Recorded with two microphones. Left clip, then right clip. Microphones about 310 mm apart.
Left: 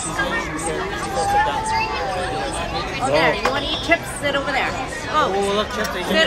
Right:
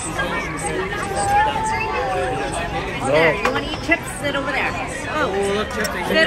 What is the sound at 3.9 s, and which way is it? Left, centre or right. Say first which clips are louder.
Speech: left 1 dB; left.